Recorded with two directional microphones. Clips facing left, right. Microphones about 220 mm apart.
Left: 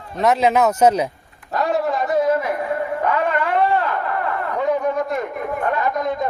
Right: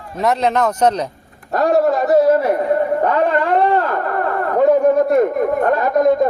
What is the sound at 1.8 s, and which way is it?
A man's voice, 40° right (ahead or behind).